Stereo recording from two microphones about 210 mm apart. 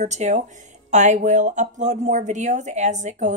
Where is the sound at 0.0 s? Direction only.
35° right (ahead or behind).